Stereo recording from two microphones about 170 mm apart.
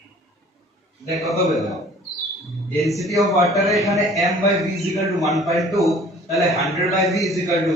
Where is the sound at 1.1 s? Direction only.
Centre (ahead or behind).